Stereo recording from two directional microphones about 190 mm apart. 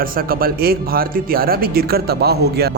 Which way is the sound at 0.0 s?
50° right (ahead or behind).